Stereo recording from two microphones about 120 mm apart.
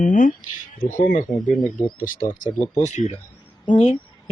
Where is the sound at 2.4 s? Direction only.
70° left (ahead or behind).